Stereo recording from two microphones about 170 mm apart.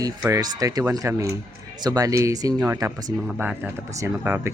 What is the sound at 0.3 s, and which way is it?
Speech, 20° right (ahead or behind).